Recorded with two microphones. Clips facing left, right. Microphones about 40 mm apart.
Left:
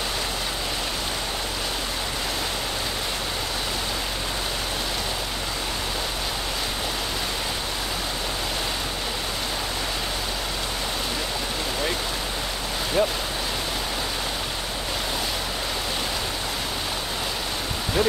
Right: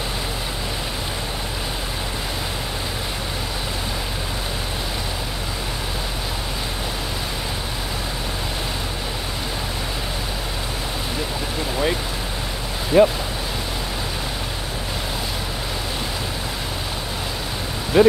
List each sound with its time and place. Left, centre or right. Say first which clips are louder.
12.9 s speech: right 9 dB; centre
17.9 s speech: right 9 dB; right